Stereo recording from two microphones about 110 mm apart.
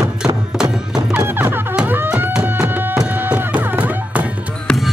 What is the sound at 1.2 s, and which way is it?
Music, 20° right (ahead or behind).